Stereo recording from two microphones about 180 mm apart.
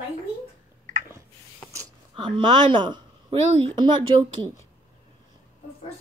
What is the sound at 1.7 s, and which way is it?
Speech, 20° right (ahead or behind).